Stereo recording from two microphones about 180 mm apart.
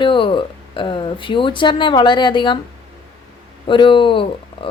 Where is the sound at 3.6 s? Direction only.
25° left (ahead or behind).